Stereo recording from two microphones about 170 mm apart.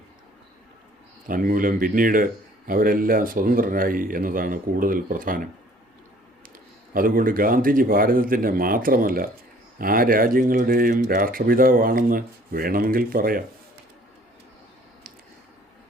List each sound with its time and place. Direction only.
1.3 s a man's voice: 55° right (ahead or behind)
6.9 s a man's voice: 55° right (ahead or behind)